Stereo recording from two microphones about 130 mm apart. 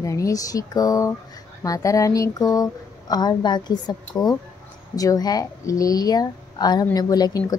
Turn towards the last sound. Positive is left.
turn(degrees=30)  # may be behind; listen again after turning